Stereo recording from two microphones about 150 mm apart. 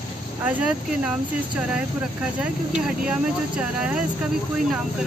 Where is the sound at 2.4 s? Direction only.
5° right (ahead or behind).